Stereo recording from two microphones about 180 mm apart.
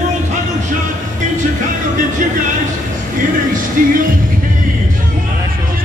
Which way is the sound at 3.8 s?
50° right (ahead or behind).